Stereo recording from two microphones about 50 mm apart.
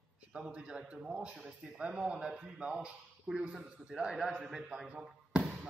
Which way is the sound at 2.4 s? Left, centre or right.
Right.